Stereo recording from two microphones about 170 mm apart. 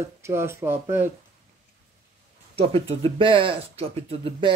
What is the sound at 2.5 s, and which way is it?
Speech, 35° right (ahead or behind).